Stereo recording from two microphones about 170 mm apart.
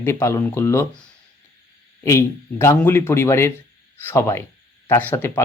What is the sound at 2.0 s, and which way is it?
Speech, 15° left (ahead or behind).